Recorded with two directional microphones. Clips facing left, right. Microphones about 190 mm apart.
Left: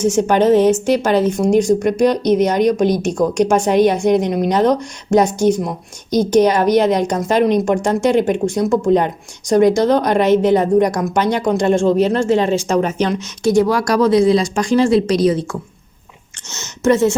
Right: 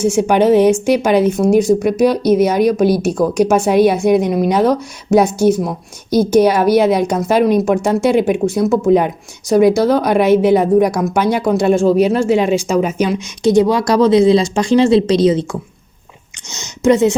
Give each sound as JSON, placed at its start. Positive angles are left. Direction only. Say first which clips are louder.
{"t": 0.0, "sound": "a woman's voice", "louder": "right 1 dB", "side_deg": -10}
{"t": 16.5, "sound": "a woman's voice", "louder": "right 2 dB", "side_deg": -15}